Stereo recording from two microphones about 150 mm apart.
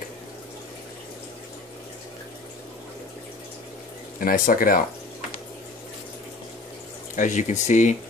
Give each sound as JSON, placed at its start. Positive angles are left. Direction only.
{"t": 4.2, "sound": "speech", "side_deg": 70}
{"t": 7.2, "sound": "speech", "side_deg": 55}